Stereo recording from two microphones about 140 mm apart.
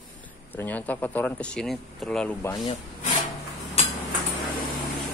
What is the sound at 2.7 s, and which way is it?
Speech, 65° left (ahead or behind).